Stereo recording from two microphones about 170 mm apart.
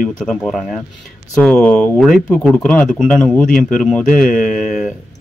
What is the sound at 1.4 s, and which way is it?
Speech, 5° left (ahead or behind).